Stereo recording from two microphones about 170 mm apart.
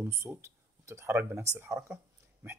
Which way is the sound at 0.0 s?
15° right (ahead or behind).